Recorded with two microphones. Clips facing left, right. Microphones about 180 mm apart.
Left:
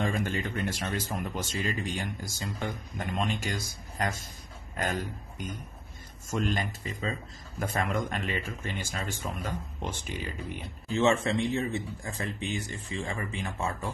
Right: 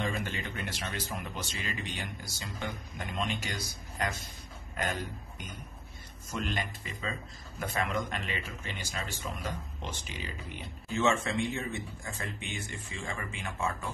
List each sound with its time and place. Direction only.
0.0 s speech: 45° left (ahead or behind)
6.2 s speech: 45° left (ahead or behind)
10.9 s speech: 35° left (ahead or behind)